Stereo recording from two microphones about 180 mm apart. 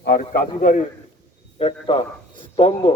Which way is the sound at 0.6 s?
45° left (ahead or behind).